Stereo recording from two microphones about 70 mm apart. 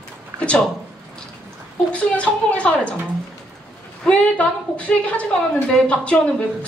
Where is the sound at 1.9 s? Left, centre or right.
Centre.